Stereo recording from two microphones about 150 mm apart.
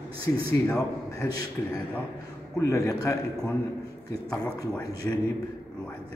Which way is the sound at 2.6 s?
20° left (ahead or behind).